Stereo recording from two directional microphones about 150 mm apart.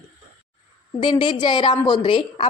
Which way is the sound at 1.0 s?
30° left (ahead or behind).